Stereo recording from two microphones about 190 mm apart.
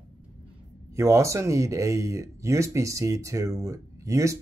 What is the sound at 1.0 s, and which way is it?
Speech, 15° right (ahead or behind).